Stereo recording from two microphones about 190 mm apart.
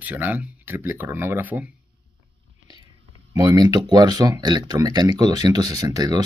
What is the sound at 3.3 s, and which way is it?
Speech, 20° right (ahead or behind).